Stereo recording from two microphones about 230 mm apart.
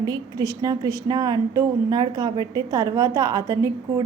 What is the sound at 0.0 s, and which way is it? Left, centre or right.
A woman's voice, centre.